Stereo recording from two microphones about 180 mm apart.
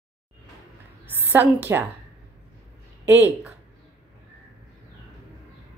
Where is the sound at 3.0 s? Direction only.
10° right (ahead or behind).